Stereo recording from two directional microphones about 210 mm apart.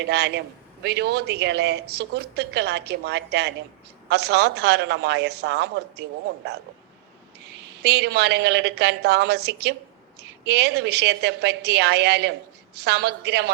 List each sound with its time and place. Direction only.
0.0 s a man's voice: 55° right (ahead or behind)
7.8 s a man's voice: 55° right (ahead or behind)